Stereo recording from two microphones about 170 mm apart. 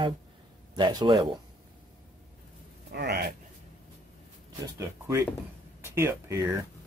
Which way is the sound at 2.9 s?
75° right (ahead or behind).